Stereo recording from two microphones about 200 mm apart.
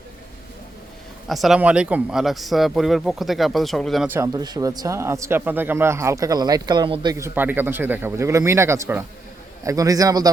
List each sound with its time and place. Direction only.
1.3 s speech: centre (ahead or behind)
4.1 s a man's voice: 15° right (ahead or behind)